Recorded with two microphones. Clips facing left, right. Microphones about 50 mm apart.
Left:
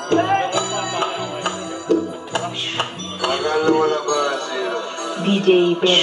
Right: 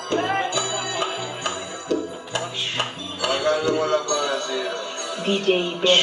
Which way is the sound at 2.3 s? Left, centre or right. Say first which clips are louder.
Left 3 dB; centre.